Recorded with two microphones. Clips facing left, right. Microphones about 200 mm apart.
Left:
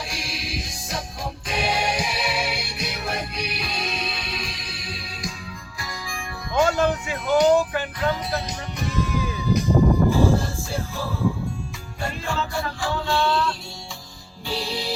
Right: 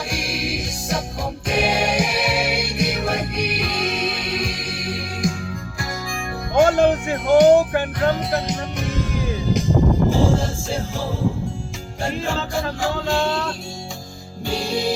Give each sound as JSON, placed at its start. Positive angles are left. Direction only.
{"t": 0.1, "sound": "music", "side_deg": -50}
{"t": 9.5, "sound": "music", "side_deg": -90}
{"t": 13.1, "sound": "music", "side_deg": -45}